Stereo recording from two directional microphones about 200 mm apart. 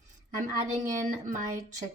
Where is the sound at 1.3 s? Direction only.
40° right (ahead or behind).